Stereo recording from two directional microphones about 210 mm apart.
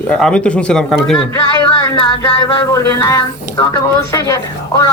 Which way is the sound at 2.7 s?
15° left (ahead or behind).